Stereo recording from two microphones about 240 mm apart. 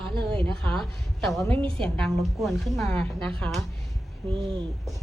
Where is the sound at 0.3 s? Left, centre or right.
Centre.